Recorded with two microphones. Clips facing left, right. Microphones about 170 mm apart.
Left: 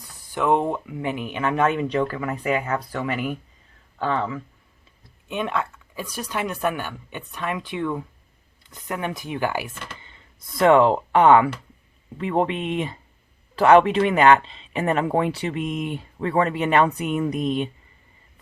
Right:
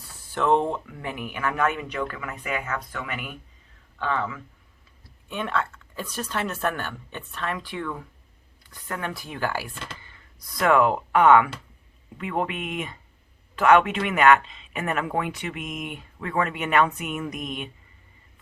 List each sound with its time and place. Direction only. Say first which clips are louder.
0.3 s speech: left 1 dB; 15° left (ahead or behind); by 4.4 s 30° left (ahead or behind)
5.3 s speech: left 2 dB; 15° left (ahead or behind)